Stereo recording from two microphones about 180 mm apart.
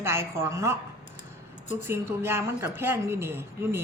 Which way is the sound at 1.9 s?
15° right (ahead or behind).